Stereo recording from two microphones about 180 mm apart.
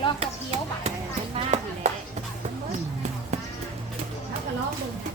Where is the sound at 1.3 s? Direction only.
40° right (ahead or behind).